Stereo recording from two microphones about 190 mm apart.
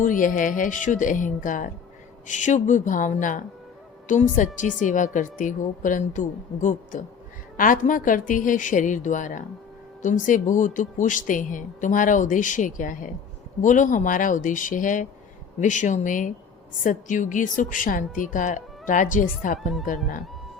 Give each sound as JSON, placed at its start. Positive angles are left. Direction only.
{"t": 0.0, "sound": "a woman's voice", "side_deg": 45}